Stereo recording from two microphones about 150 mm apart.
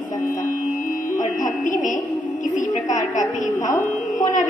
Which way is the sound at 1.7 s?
60° left (ahead or behind).